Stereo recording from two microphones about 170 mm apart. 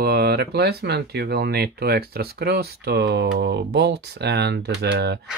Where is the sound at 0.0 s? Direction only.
70° right (ahead or behind).